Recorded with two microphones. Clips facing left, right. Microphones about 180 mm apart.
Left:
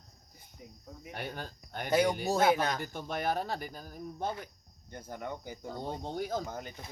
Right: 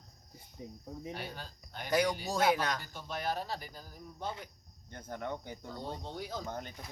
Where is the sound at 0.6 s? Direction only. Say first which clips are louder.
Right 6 dB; 25° right (ahead or behind).